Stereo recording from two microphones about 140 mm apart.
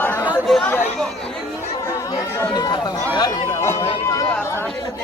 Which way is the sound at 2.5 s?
30° left (ahead or behind).